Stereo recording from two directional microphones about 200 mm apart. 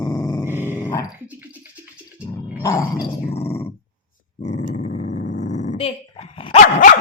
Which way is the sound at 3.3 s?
30° left (ahead or behind).